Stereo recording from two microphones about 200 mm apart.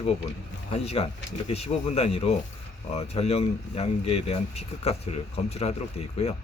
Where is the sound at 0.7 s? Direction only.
30° left (ahead or behind).